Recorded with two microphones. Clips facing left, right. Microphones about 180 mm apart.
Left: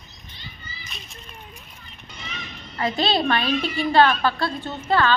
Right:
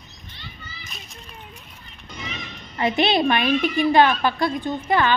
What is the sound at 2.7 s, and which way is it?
A woman's voice, 20° right (ahead or behind).